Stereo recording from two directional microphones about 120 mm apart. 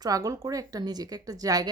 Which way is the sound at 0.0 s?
30° right (ahead or behind).